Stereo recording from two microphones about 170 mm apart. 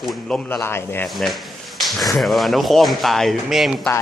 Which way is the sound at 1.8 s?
Centre (ahead or behind).